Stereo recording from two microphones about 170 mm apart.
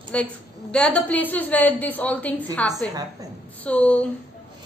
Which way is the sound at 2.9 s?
20° right (ahead or behind).